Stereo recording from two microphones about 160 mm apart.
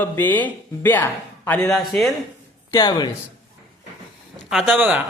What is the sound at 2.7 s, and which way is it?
Speech, 25° left (ahead or behind).